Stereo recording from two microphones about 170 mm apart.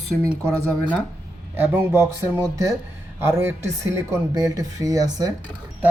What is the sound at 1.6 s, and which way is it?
Speech, 15° right (ahead or behind).